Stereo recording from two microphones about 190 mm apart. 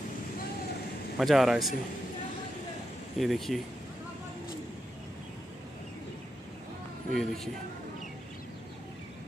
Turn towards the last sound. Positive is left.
turn(degrees=0)  # may be behind; listen again after turning